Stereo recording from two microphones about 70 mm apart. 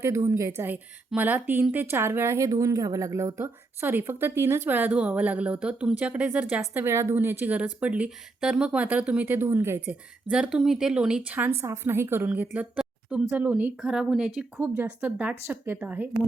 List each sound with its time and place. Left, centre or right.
0.3 s speech: right
0.6 s a woman's voice: right
2.5 s a woman's voice: right
4.9 s speech: centre
6.9 s speech: right
10.2 s speech: centre
11.3 s a woman's voice: right
13.8 s speech: centre
14.5 s a woman's voice: right
14.8 s speech: right
15.4 s a woman's voice: right
15.8 s speech: right